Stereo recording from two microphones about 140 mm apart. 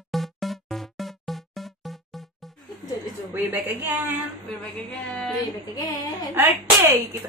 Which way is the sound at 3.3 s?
15° right (ahead or behind).